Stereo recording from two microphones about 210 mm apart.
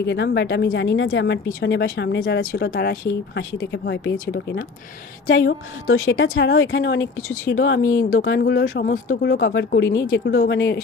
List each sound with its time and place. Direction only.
0.0 s speech: 55° left (ahead or behind)
5.8 s speech: 70° left (ahead or behind)
8.1 s speech: 50° left (ahead or behind)